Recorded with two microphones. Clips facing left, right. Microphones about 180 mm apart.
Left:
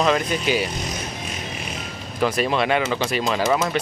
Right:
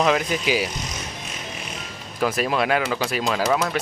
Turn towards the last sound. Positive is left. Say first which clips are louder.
# left 1 dB
turn(degrees=5)  # may be behind; listen again after turning